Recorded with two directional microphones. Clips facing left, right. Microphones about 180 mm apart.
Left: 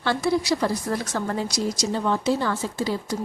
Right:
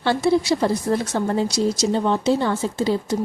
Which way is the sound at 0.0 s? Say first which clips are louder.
Right 4 dB; 25° right (ahead or behind).